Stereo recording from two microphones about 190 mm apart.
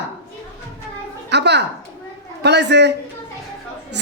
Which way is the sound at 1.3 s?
65° right (ahead or behind).